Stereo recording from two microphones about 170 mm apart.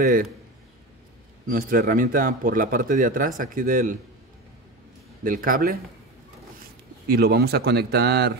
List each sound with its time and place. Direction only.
0.0 s speech: 55° right (ahead or behind)
1.5 s speech: 55° right (ahead or behind)
5.2 s speech: 55° right (ahead or behind)
7.1 s speech: 65° right (ahead or behind)